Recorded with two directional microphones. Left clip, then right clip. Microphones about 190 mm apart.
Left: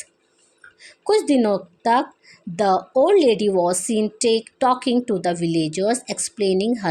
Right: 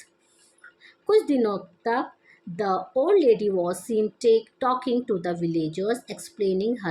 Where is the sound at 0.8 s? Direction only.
50° left (ahead or behind).